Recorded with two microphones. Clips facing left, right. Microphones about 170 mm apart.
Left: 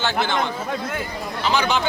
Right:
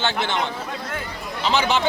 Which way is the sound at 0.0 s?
Centre (ahead or behind).